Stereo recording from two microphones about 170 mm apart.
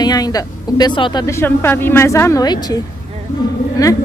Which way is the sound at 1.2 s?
15° left (ahead or behind).